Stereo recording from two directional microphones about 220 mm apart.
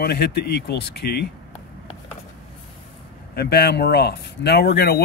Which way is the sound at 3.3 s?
45° left (ahead or behind).